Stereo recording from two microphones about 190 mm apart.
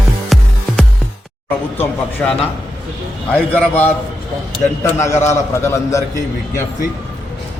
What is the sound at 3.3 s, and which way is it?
Speech, 10° left (ahead or behind).